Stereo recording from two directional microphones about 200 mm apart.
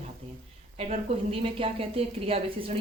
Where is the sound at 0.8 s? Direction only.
30° right (ahead or behind).